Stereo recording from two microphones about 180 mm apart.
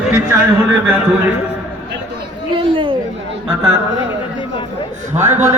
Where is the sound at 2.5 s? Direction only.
30° right (ahead or behind).